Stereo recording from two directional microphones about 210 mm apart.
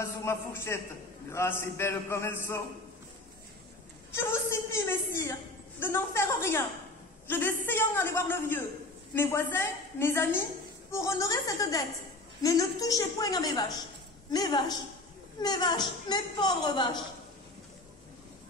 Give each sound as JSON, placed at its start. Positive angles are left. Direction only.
{"t": 0.0, "sound": "a man's voice", "side_deg": 10}
{"t": 4.1, "sound": "a woman's voice", "side_deg": 10}